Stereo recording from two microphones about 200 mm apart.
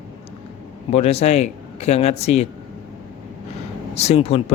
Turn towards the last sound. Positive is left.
turn(degrees=30)  # may be behind; listen again after turning